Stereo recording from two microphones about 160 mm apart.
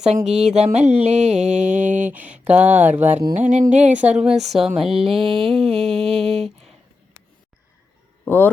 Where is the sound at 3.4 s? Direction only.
50° right (ahead or behind).